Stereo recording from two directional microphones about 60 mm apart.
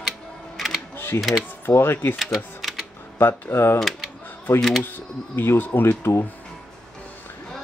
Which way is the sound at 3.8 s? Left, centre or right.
Centre.